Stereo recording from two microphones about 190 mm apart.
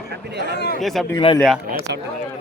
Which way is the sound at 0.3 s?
60° right (ahead or behind).